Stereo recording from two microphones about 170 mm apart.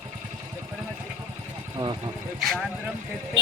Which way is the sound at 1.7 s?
25° right (ahead or behind).